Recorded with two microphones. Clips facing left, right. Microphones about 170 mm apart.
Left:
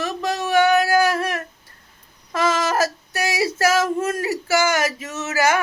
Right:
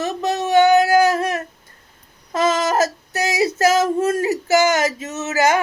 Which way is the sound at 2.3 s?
20° right (ahead or behind).